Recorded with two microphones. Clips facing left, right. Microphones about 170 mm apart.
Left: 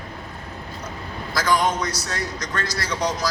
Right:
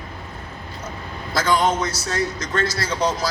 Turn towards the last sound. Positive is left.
turn(degrees=-30)  # may be behind; listen again after turning